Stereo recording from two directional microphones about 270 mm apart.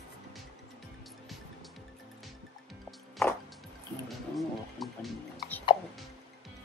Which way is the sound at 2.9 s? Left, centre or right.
Centre.